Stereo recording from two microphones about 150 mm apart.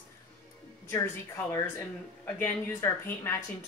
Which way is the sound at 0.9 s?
15° left (ahead or behind).